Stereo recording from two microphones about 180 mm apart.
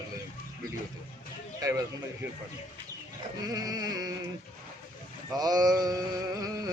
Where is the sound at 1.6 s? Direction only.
20° right (ahead or behind).